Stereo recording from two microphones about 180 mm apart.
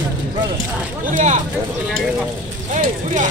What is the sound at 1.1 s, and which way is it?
Speech, 45° right (ahead or behind).